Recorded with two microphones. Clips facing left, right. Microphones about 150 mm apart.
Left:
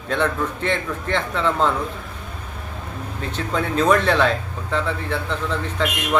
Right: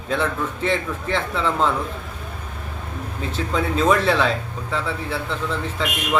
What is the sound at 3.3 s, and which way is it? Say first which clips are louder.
Speech: even; centre (ahead or behind).